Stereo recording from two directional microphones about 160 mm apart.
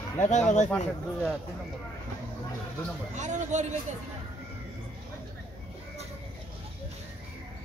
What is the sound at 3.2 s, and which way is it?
Speech, 50° right (ahead or behind).